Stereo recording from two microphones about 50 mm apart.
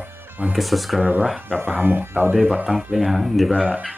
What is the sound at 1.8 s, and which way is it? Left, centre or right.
Speech, right.